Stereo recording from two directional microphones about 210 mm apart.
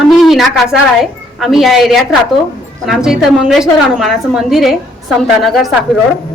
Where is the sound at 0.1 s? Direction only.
Centre (ahead or behind).